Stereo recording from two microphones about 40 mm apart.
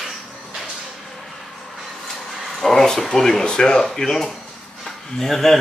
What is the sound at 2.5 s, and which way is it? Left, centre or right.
Speech, centre.